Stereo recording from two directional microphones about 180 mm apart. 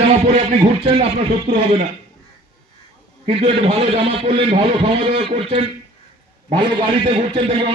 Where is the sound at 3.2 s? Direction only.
30° right (ahead or behind).